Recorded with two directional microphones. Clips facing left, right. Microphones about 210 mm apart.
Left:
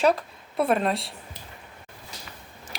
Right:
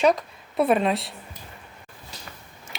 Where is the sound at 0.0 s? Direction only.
Centre (ahead or behind).